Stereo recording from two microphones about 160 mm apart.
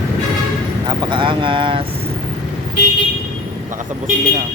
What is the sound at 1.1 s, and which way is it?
Speech, 30° right (ahead or behind).